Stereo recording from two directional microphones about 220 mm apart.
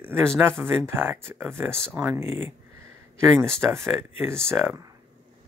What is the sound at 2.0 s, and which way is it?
Speech, 10° right (ahead or behind).